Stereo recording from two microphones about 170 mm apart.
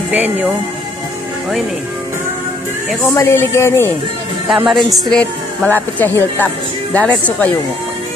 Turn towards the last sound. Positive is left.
turn(degrees=10)  # may be behind; listen again after turning